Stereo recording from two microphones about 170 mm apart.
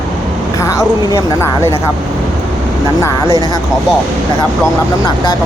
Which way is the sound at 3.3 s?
25° right (ahead or behind).